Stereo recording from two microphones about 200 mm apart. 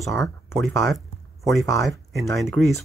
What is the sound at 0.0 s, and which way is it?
Speech, centre (ahead or behind).